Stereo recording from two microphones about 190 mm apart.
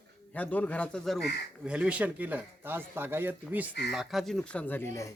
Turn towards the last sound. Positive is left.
turn(degrees=15)  # may be behind; listen again after turning